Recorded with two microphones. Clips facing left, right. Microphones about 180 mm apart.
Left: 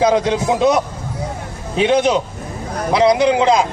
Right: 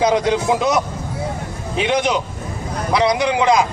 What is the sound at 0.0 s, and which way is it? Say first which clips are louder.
Speech: left 1 dB; 25° left (ahead or behind).